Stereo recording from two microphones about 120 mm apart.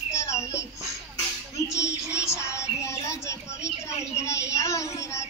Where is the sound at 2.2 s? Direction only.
25° left (ahead or behind).